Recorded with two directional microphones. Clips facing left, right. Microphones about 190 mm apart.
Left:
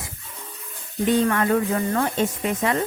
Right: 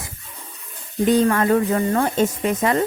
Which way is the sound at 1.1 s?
40° right (ahead or behind).